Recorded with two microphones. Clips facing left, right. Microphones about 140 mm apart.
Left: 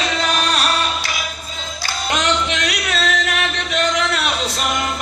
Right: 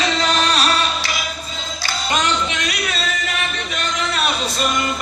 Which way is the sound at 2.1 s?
75° left (ahead or behind).